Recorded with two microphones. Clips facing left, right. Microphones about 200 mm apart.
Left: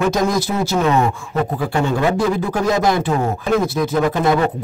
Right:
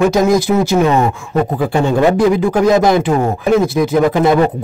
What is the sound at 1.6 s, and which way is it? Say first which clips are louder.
Speech: right 6 dB; 15° right (ahead or behind).